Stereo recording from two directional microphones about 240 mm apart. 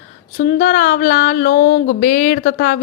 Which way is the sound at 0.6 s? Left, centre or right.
Left.